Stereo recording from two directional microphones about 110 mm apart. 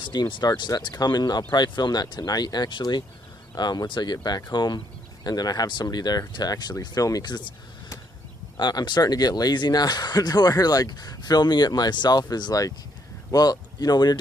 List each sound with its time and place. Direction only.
0.0 s speech: 45° left (ahead or behind)
8.5 s speech: 45° left (ahead or behind)